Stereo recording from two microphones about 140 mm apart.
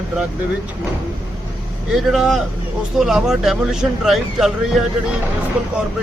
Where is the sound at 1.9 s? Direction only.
Centre (ahead or behind).